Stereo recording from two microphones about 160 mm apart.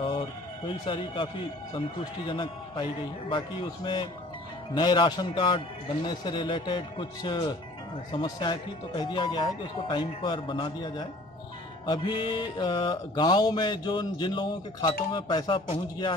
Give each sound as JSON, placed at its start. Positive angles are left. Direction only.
{"t": 0.8, "sound": "a man's voice", "side_deg": 35}
{"t": 4.7, "sound": "music", "side_deg": 30}
{"t": 6.0, "sound": "speech", "side_deg": 25}
{"t": 8.1, "sound": "music", "side_deg": 30}